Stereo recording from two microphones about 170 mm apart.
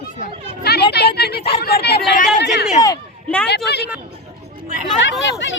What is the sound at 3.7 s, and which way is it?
Speech, 75° left (ahead or behind).